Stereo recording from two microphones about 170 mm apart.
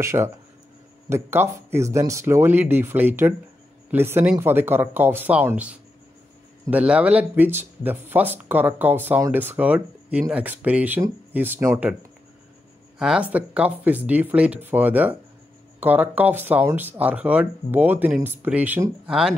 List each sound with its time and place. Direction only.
0.0 s speech: 15° right (ahead or behind)
13.0 s speech: 5° right (ahead or behind)